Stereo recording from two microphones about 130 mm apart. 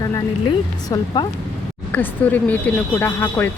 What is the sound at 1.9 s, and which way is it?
Speech, 15° left (ahead or behind).